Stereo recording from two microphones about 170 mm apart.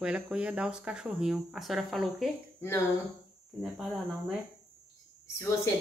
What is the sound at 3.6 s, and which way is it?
Speech, 5° right (ahead or behind).